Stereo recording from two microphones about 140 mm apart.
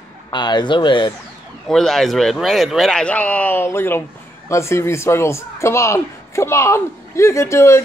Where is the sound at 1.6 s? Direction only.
5° left (ahead or behind).